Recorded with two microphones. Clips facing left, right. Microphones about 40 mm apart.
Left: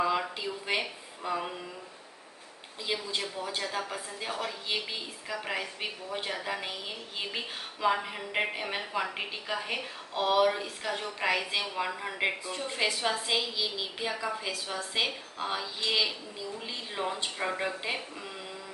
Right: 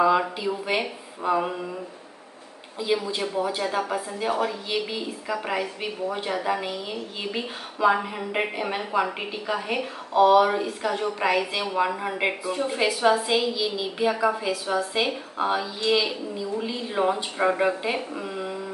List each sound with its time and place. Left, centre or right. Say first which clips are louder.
0.0 s a woman's voice: right 8 dB; centre
3.2 s a woman's voice: right 8 dB; right
4.3 s speech: right 10 dB; right
4.9 s a woman's voice: right 8 dB; centre
14.7 s a woman's voice: right 7 dB; centre
16.9 s speech: right 9 dB; right